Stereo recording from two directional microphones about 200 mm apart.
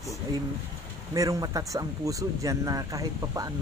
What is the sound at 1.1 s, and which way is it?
Speech, 15° right (ahead or behind).